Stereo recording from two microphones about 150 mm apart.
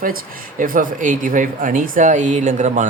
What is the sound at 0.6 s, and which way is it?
Speech, 65° right (ahead or behind).